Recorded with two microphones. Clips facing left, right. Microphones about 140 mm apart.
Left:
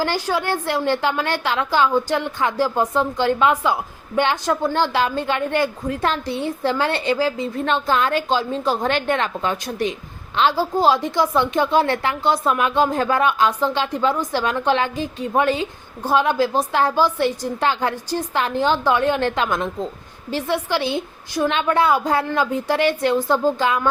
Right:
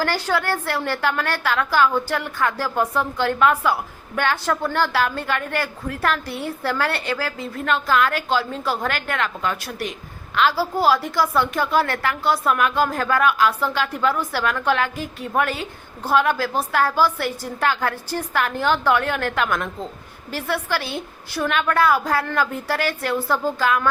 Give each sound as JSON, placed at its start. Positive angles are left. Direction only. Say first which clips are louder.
{"t": 0.0, "sound": "a woman's voice", "louder": "left 1 dB", "side_deg": 15}